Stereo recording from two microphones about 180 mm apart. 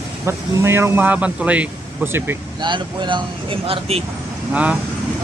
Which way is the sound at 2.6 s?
25° right (ahead or behind).